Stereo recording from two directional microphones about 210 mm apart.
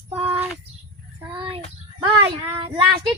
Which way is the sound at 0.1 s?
25° right (ahead or behind).